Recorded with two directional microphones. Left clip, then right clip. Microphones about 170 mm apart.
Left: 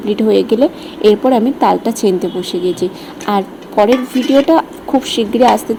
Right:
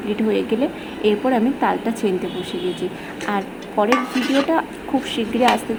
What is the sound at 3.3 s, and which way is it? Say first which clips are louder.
A woman's voice: left 9 dB; 35° left (ahead or behind).